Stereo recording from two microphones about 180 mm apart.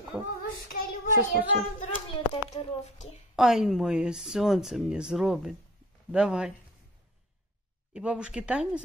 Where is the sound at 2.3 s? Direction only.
35° left (ahead or behind).